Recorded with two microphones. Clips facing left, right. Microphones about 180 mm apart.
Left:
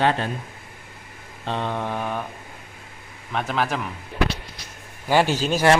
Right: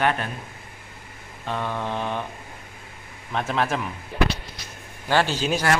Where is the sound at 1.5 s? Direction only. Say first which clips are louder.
Left 1 dB; 20° left (ahead or behind).